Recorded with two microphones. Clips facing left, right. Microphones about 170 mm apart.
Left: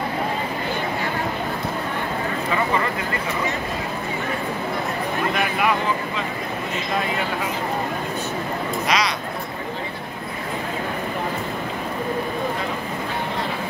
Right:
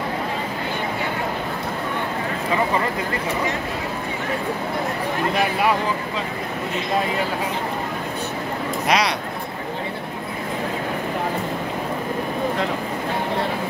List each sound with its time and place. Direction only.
5.3 s speech: 30° right (ahead or behind)
8.8 s speech: 60° right (ahead or behind)